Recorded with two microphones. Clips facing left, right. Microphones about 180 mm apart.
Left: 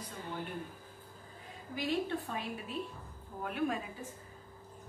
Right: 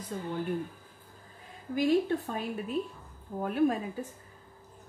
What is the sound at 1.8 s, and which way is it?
A woman's voice, 45° right (ahead or behind).